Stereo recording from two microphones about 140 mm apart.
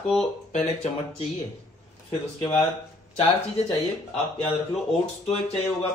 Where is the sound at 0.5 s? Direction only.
50° left (ahead or behind).